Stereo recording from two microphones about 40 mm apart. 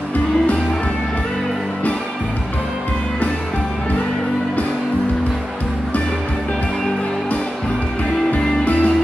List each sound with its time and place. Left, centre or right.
8.3 s music: left